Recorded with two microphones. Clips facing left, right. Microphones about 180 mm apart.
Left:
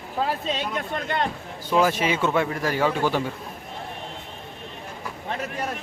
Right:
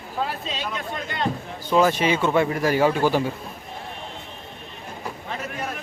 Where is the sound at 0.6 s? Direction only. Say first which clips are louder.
Left 2 dB; 55° left (ahead or behind).